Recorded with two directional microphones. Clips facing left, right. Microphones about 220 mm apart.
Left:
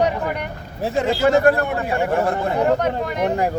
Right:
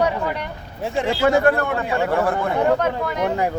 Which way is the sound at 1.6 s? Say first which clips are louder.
Even; 20° left (ahead or behind).